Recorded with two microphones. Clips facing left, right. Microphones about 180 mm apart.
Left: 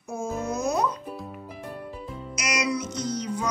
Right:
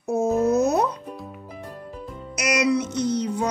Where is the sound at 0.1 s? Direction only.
65° right (ahead or behind).